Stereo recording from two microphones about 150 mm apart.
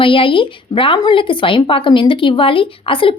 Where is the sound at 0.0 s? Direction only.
35° left (ahead or behind).